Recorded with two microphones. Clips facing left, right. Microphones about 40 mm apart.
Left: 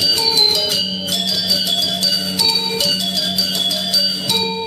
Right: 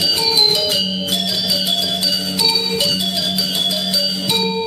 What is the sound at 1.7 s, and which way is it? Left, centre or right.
Music, centre.